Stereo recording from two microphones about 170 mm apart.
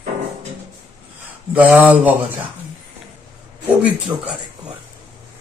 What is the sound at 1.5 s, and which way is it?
Speech, 10° right (ahead or behind).